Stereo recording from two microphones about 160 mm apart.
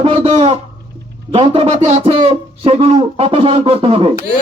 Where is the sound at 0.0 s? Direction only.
35° right (ahead or behind).